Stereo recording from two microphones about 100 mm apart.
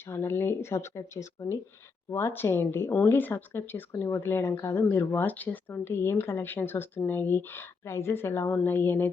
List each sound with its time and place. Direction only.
0.0 s speech: 25° left (ahead or behind)